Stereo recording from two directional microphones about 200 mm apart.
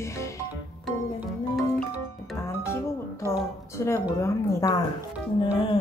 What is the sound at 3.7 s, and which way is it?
Speech, 10° left (ahead or behind).